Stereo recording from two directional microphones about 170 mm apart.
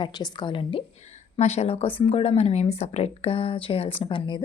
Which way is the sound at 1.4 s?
40° left (ahead or behind).